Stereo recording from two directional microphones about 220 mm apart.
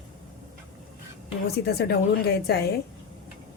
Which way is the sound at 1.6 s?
45° left (ahead or behind).